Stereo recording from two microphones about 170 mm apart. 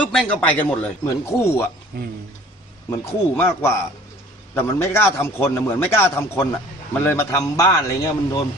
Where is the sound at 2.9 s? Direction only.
15° left (ahead or behind).